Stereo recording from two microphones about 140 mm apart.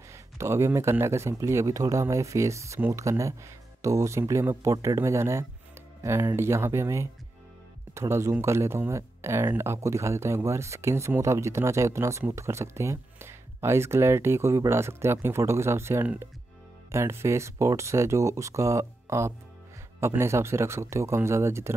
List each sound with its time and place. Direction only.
0.1 s speech: 20° right (ahead or behind)